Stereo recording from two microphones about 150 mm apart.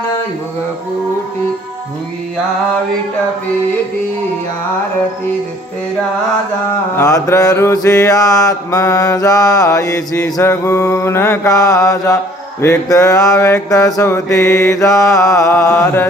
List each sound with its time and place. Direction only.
6.9 s mantra: 20° left (ahead or behind)